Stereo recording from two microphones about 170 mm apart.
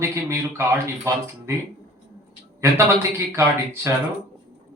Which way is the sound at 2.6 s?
15° right (ahead or behind).